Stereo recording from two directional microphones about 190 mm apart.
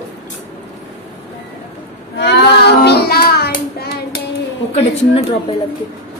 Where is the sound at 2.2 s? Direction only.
65° left (ahead or behind).